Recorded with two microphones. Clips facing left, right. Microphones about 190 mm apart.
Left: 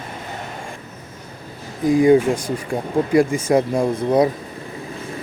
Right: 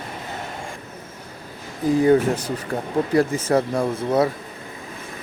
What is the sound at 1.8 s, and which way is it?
Speech, 15° left (ahead or behind).